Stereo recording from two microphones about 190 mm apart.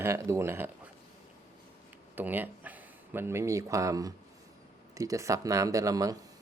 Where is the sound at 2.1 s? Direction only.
10° right (ahead or behind).